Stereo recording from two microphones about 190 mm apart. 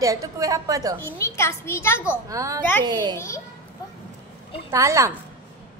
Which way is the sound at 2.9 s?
25° right (ahead or behind).